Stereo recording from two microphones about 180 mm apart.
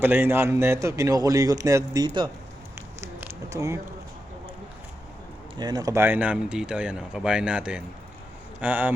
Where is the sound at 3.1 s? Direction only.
15° right (ahead or behind).